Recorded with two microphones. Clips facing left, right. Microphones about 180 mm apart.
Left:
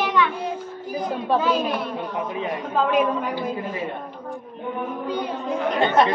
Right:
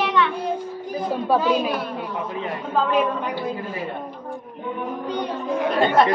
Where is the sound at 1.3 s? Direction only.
5° right (ahead or behind).